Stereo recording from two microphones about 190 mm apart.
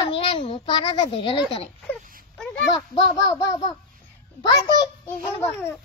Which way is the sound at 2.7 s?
25° left (ahead or behind).